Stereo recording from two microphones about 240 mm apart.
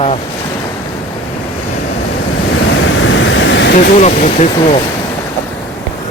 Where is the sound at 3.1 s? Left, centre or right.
Left.